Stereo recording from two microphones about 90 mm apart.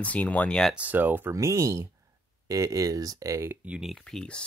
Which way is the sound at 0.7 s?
20° right (ahead or behind).